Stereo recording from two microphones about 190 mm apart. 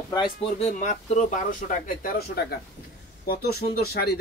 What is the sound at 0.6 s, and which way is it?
Speech, 40° left (ahead or behind).